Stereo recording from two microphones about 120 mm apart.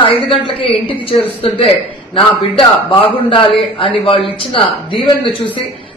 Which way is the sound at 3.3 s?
45° left (ahead or behind).